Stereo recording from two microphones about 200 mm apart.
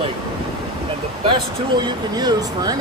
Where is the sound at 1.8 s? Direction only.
20° right (ahead or behind).